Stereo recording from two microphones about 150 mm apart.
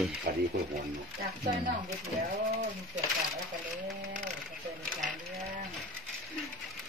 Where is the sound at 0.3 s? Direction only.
90° right.